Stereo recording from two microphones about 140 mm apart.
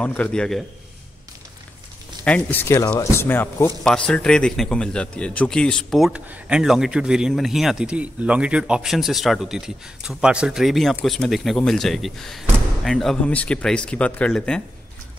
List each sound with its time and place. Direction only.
0.0 s a man's voice: 10° left (ahead or behind)
2.2 s speech: 10° left (ahead or behind)
3.8 s a man's voice: 5° left (ahead or behind)